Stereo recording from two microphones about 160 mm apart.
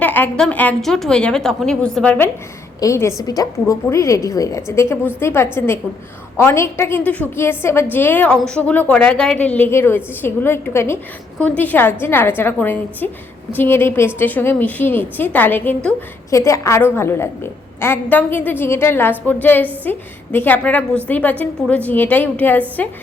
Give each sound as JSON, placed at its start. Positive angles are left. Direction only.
{"t": 0.0, "sound": "a woman's voice", "side_deg": 10}